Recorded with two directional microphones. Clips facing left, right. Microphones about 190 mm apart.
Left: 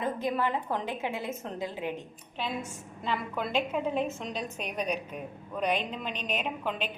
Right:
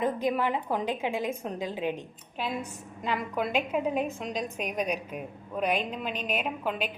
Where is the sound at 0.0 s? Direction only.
15° right (ahead or behind).